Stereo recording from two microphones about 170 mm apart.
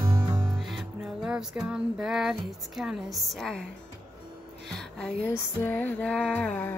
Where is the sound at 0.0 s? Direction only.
25° right (ahead or behind).